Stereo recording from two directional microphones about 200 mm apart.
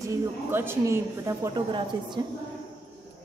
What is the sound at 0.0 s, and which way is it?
A woman's voice, 15° right (ahead or behind).